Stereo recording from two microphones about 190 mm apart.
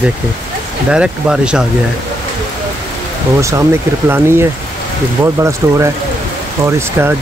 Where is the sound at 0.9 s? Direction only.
5° right (ahead or behind).